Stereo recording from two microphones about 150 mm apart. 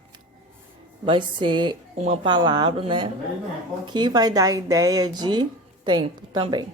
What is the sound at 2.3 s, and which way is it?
A woman's voice, 30° right (ahead or behind).